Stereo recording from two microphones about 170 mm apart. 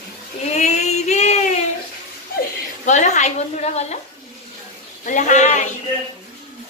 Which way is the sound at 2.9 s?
45° left (ahead or behind).